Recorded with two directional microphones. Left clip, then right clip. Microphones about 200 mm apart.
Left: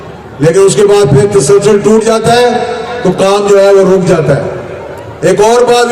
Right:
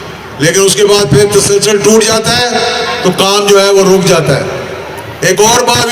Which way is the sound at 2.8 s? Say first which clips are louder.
Even; 50° left (ahead or behind).